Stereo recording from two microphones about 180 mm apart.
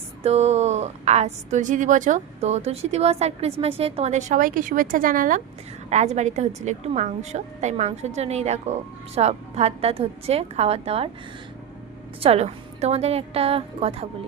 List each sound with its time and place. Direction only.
0.2 s a woman's voice: 35° right (ahead or behind)
12.2 s a woman's voice: 35° right (ahead or behind)